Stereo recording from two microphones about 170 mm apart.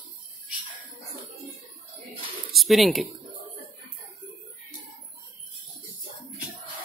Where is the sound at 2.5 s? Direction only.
Centre (ahead or behind).